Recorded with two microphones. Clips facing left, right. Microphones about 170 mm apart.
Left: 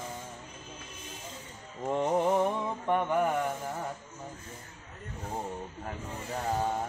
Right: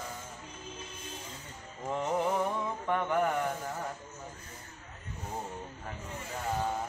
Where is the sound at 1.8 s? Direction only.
20° left (ahead or behind).